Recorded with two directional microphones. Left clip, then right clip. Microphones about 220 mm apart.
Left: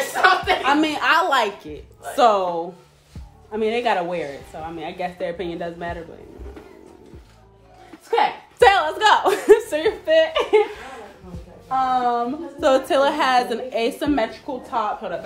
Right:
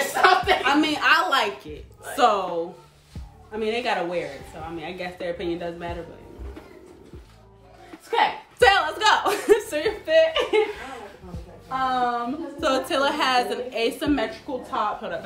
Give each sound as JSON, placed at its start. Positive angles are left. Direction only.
{"t": 0.1, "sound": "a sound", "side_deg": 0}
{"t": 0.7, "sound": "a sound", "side_deg": 35}
{"t": 2.1, "sound": "a woman's voice", "side_deg": 30}
{"t": 3.5, "sound": "a woman's voice", "side_deg": 30}
{"t": 8.1, "sound": "a woman's voice", "side_deg": 30}
{"t": 11.9, "sound": "a woman's voice", "side_deg": 30}